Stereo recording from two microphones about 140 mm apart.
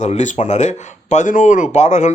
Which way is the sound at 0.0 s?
60° left (ahead or behind).